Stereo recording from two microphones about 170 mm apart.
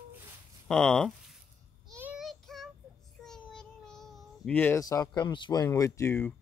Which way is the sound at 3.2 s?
5° left (ahead or behind).